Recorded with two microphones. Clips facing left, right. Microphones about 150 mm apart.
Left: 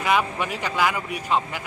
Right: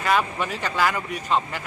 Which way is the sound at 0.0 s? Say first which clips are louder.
Even; 10° left (ahead or behind).